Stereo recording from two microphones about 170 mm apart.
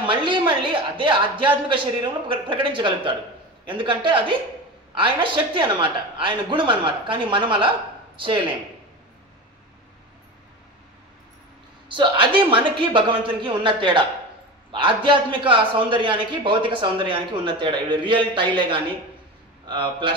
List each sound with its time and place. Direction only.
0.0 s a man's voice: 30° right (ahead or behind)
11.9 s a man's voice: 30° right (ahead or behind)